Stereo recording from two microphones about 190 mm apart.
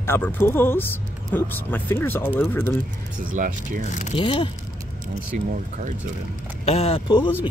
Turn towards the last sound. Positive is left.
turn(degrees=30)  # may be behind; listen again after turning